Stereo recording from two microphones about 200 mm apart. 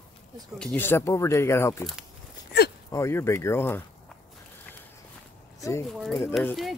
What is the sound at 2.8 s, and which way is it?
Speech, 15° left (ahead or behind).